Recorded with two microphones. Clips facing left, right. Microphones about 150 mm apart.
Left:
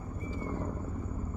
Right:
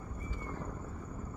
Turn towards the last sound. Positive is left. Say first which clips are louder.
# left 6 dB
turn(degrees=25)  # may be behind; listen again after turning